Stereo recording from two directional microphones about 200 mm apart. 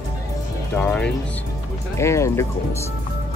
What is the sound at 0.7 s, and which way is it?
Speech, 5° left (ahead or behind).